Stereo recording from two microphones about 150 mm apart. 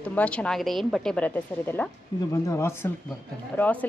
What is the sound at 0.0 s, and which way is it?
Speech, 10° left (ahead or behind).